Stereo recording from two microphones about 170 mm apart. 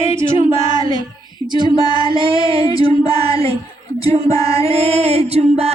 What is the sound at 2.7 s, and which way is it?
Music, 30° right (ahead or behind).